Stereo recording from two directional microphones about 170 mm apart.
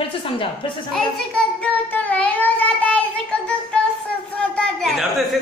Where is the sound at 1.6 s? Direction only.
10° left (ahead or behind).